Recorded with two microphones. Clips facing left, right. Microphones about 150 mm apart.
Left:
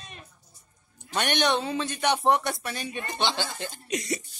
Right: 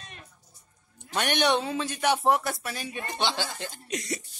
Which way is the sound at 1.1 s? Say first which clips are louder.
Even; 5° right (ahead or behind).